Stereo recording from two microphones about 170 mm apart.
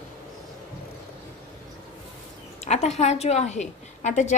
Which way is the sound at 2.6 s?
40° left (ahead or behind).